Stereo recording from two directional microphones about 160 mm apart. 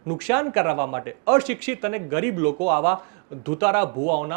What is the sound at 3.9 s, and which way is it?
Speech, 45° right (ahead or behind).